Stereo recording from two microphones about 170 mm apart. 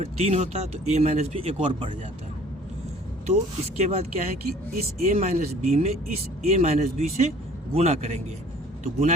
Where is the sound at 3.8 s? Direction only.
40° right (ahead or behind).